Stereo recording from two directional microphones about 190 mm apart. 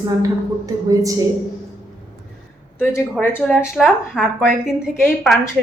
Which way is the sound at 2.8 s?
15° left (ahead or behind).